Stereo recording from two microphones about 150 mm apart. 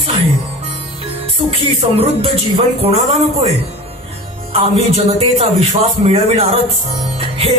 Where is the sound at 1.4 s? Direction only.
40° right (ahead or behind).